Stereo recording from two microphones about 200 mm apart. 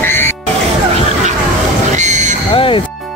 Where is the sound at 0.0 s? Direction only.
10° left (ahead or behind).